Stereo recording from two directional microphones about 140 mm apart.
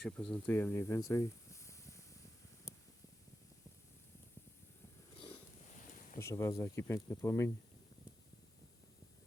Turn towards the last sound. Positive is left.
turn(degrees=20)  # may be behind; listen again after turning